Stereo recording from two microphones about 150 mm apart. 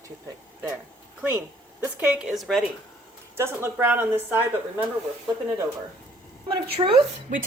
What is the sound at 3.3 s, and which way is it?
A woman's voice, 15° right (ahead or behind).